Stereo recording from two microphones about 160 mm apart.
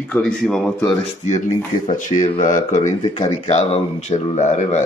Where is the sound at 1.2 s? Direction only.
50° left (ahead or behind).